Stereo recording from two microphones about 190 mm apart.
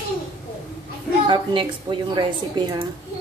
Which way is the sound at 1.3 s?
25° right (ahead or behind).